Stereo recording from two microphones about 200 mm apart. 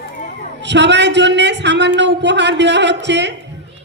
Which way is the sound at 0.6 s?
60° right (ahead or behind).